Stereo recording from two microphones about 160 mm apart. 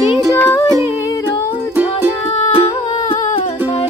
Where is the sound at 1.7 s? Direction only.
10° right (ahead or behind).